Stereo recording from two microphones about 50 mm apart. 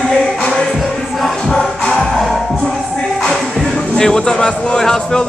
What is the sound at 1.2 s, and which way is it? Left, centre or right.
Music, centre.